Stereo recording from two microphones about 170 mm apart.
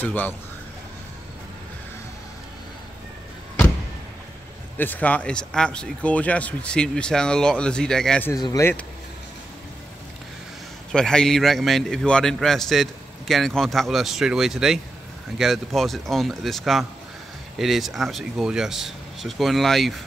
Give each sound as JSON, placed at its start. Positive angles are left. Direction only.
{"t": 0.0, "sound": "speech", "side_deg": 10}
{"t": 4.7, "sound": "a man's voice", "side_deg": 10}
{"t": 8.3, "sound": "speech", "side_deg": 20}
{"t": 10.9, "sound": "a man's voice", "side_deg": 5}